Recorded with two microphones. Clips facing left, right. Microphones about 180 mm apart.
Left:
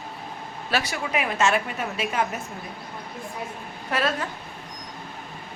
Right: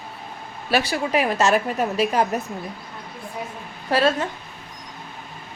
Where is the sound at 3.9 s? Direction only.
30° right (ahead or behind).